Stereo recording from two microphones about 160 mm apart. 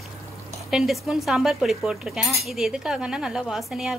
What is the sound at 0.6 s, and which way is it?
Speech, centre (ahead or behind).